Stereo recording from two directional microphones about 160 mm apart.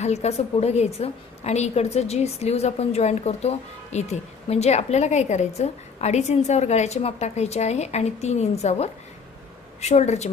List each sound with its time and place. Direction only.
0.0 s a woman's voice: 45° left (ahead or behind)